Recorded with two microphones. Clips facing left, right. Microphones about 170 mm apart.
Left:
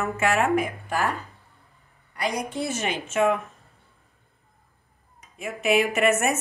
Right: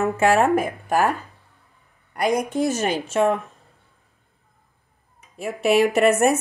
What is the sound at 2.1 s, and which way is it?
Speech, 50° right (ahead or behind).